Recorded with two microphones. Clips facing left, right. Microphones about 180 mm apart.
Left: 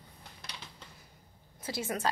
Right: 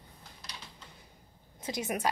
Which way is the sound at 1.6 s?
20° right (ahead or behind).